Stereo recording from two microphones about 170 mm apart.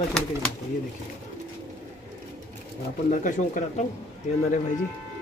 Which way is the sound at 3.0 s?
50° left (ahead or behind).